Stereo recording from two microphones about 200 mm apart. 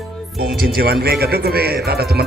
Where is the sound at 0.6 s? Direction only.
50° right (ahead or behind).